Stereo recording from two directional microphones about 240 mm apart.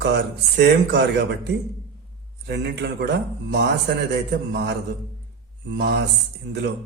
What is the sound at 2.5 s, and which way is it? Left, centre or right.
Speech, right.